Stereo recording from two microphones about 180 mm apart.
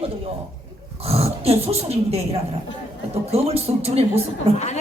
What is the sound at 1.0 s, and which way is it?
Speech, 35° right (ahead or behind).